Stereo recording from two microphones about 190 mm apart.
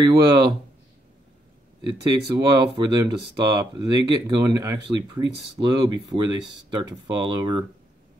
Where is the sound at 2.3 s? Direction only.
20° right (ahead or behind).